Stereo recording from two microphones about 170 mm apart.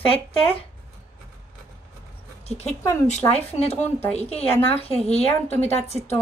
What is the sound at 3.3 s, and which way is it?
Speech, 40° left (ahead or behind).